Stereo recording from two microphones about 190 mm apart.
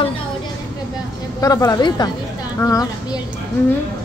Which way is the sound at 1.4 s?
20° left (ahead or behind).